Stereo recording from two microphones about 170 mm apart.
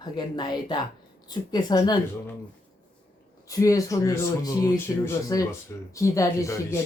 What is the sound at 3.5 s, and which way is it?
Speech, 20° left (ahead or behind).